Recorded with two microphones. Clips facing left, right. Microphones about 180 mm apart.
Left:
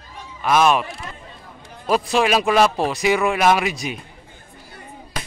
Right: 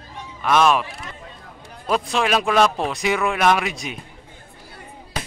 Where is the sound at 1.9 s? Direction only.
5° left (ahead or behind).